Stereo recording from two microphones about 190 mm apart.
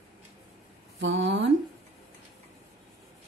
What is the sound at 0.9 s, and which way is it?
Speech, 75° right (ahead or behind).